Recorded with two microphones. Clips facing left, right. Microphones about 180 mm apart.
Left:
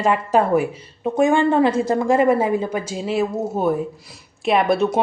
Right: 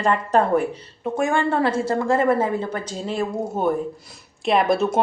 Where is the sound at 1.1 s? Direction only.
20° left (ahead or behind).